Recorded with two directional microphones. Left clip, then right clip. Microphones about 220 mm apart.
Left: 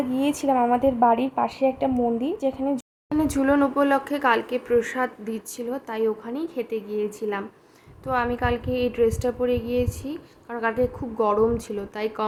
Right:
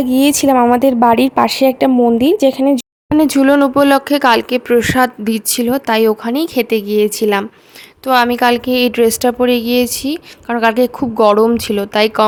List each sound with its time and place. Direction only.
0.1 s a woman's voice: 45° right (ahead or behind)